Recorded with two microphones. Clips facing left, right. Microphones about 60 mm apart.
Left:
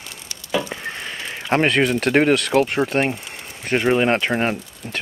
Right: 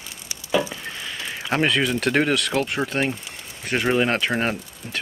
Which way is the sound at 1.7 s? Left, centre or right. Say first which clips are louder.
Left 4 dB; left.